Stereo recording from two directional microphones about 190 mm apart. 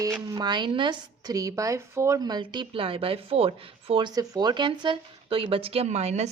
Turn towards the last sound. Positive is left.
turn(degrees=-35)  # may be behind; listen again after turning